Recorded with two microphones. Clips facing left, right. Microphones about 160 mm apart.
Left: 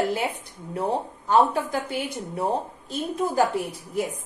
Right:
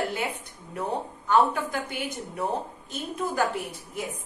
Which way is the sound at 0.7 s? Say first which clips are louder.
Left 4 dB; 30° left (ahead or behind).